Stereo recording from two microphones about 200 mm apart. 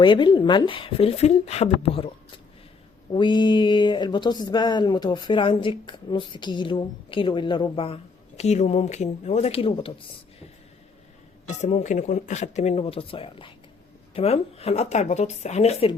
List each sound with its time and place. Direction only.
0.0 s speech: 25° left (ahead or behind)
3.1 s speech: 25° left (ahead or behind)
11.4 s speech: 35° left (ahead or behind)